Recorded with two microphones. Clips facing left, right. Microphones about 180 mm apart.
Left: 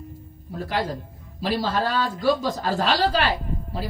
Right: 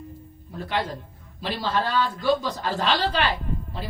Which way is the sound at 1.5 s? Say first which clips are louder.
Left 2 dB; 45° left (ahead or behind).